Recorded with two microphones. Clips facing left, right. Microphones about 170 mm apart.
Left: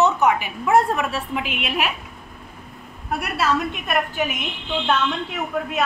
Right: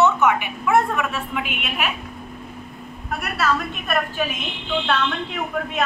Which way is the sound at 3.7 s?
15° left (ahead or behind).